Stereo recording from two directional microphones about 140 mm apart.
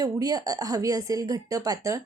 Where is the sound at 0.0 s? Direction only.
25° right (ahead or behind).